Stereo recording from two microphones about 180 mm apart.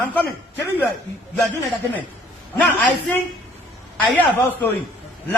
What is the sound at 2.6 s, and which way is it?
Speech, centre (ahead or behind).